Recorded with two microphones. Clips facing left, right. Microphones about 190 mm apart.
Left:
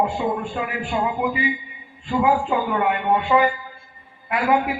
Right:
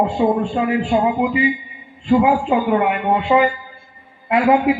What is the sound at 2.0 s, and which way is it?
A man's voice, 20° right (ahead or behind).